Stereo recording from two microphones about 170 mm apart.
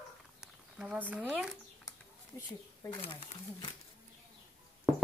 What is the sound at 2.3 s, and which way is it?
Speech, 15° left (ahead or behind).